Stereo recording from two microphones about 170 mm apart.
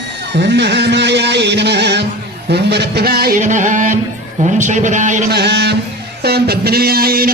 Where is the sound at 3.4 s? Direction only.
45° right (ahead or behind).